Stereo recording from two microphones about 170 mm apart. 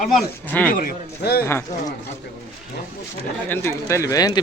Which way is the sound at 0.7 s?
55° left (ahead or behind).